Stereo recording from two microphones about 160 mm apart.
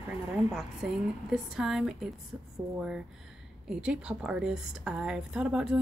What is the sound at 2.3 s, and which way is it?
Speech, 15° right (ahead or behind).